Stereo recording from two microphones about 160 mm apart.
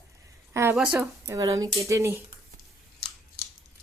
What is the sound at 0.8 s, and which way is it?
Speech, 5° right (ahead or behind).